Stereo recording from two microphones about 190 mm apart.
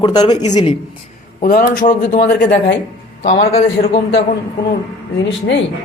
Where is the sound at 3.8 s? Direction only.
40° left (ahead or behind).